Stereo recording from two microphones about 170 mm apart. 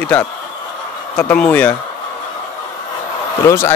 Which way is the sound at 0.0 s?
10° left (ahead or behind).